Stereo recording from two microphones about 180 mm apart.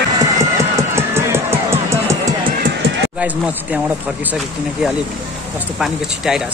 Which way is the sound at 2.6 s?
65° right (ahead or behind).